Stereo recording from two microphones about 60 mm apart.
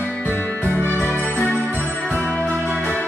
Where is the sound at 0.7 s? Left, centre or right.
Left.